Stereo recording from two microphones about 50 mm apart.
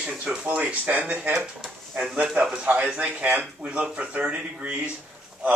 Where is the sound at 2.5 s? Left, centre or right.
Right.